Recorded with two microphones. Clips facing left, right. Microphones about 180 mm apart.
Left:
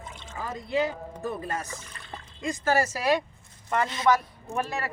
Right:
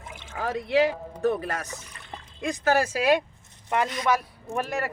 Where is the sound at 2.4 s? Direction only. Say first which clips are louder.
Right 2 dB; 65° right (ahead or behind).